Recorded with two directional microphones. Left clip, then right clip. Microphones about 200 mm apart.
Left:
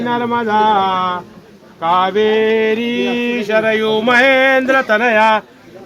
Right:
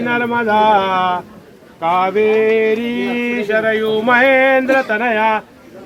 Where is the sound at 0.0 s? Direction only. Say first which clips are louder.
Even; 15° left (ahead or behind).